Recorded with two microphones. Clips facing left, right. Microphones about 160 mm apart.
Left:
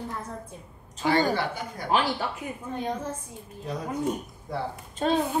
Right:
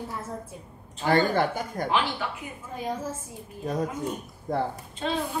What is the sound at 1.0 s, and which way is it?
Speech, 50° right (ahead or behind).